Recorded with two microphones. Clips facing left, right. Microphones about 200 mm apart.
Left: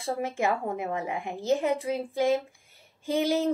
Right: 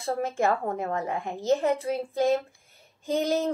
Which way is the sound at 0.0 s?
10° left (ahead or behind).